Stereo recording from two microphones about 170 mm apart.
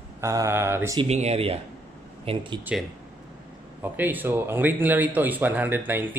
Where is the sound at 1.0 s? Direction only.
40° right (ahead or behind).